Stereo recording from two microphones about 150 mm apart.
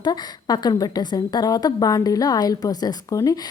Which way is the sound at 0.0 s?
25° left (ahead or behind).